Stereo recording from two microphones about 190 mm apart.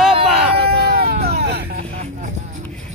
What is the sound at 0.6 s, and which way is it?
Vehicle, 55° right (ahead or behind).